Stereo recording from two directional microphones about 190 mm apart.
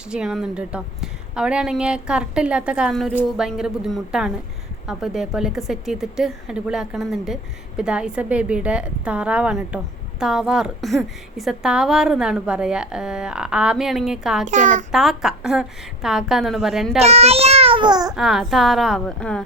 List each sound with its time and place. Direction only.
0.1 s a woman's voice: 5° right (ahead or behind)
14.4 s a child's voice: 40° right (ahead or behind)
14.9 s a woman's voice: centre (ahead or behind)
17.0 s a child's voice: 35° right (ahead or behind)
18.1 s a woman's voice: centre (ahead or behind)